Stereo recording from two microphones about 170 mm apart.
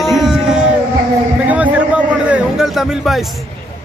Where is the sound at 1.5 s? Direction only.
10° right (ahead or behind).